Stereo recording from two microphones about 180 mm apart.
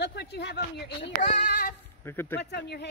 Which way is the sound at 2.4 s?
65° left (ahead or behind).